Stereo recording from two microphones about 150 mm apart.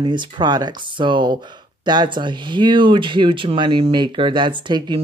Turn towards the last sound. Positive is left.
turn(degrees=-30)  # may be behind; listen again after turning